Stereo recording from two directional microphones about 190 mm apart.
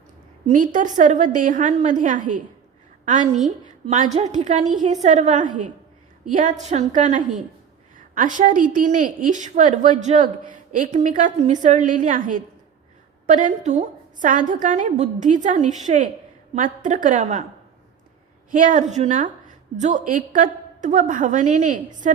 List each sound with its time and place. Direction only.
0.4 s a woman's voice: 40° right (ahead or behind)
18.5 s a woman's voice: 45° right (ahead or behind)